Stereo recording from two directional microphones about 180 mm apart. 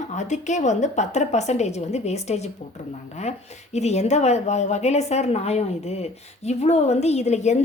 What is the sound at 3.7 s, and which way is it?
A woman's voice, 40° left (ahead or behind).